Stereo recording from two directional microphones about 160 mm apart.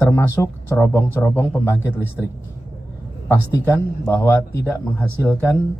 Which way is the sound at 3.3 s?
15° left (ahead or behind).